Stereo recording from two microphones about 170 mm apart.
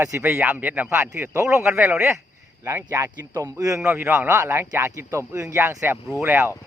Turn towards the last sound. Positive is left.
turn(degrees=-10)  # may be behind; listen again after turning